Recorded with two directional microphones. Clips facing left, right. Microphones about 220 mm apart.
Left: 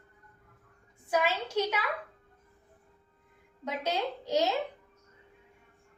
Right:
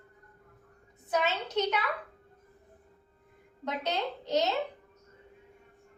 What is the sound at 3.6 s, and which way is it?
Speech, 10° left (ahead or behind).